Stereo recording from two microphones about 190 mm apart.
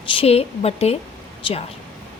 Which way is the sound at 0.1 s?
30° left (ahead or behind).